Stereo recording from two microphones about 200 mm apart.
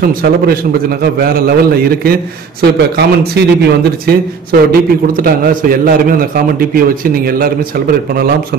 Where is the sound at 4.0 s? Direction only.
45° right (ahead or behind).